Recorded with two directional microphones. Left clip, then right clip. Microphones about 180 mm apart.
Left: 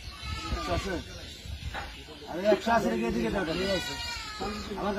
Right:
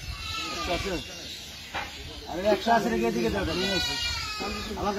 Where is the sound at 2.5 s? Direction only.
20° left (ahead or behind).